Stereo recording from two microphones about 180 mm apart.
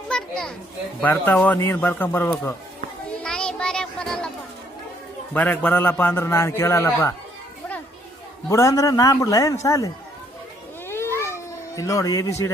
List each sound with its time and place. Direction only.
0.1 s children playing: 5° left (ahead or behind)
1.0 s a man's voice: 10° left (ahead or behind)
3.2 s a sound: 5° left (ahead or behind)
5.3 s a man's voice: 10° left (ahead or behind)
8.4 s a man's voice: 15° left (ahead or behind)
10.8 s a sound: 15° left (ahead or behind)